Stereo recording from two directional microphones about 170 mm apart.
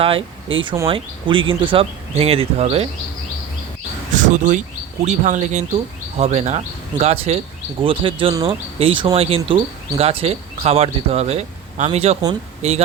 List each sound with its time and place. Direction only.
0.0 s speech: 30° right (ahead or behind)
4.1 s speech: 50° right (ahead or behind)